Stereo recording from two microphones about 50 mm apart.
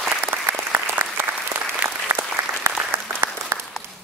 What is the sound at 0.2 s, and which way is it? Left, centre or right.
Applause, right.